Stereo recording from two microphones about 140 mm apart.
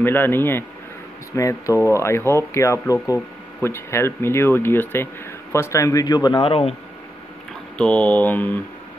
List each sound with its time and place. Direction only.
0.0 s speech: 15° left (ahead or behind); by 6.7 s 40° left (ahead or behind)
7.7 s speech: 10° left (ahead or behind)